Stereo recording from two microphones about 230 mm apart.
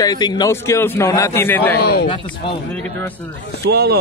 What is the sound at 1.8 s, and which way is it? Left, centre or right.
Speech, left.